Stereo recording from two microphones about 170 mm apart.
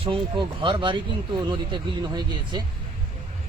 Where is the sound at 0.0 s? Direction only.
30° right (ahead or behind).